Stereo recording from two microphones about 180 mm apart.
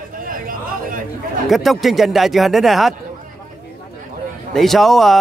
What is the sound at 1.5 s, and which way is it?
Speech, centre (ahead or behind).